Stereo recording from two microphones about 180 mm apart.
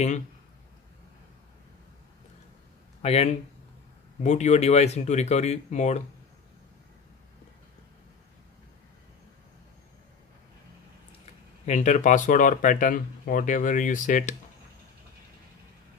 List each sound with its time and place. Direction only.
3.0 s speech: 35° left (ahead or behind)
11.6 s speech: 40° left (ahead or behind)